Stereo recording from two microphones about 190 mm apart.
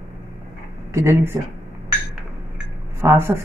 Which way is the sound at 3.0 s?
15° right (ahead or behind).